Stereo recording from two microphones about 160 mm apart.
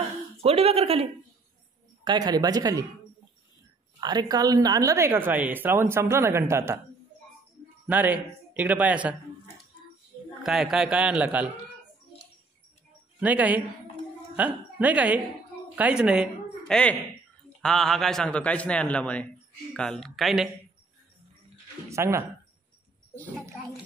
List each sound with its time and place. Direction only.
0.4 s speech: 40° right (ahead or behind)
2.0 s speech: 25° right (ahead or behind)
4.0 s a woman's voice: 25° right (ahead or behind)
7.8 s speech: 10° right (ahead or behind)
10.4 s speech: centre (ahead or behind)
13.2 s a woman's voice: 10° right (ahead or behind)
16.6 s a man's voice: 5° left (ahead or behind)
21.8 s speech: 15° right (ahead or behind)